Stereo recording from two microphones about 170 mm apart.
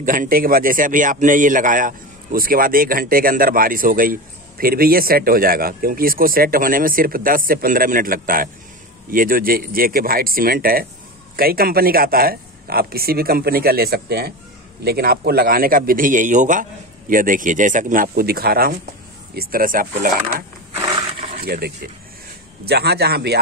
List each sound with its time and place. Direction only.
0.0 s a man's voice: 55° right (ahead or behind)
20.8 s a sound: 30° right (ahead or behind)
21.3 s a man's voice: 60° right (ahead or behind)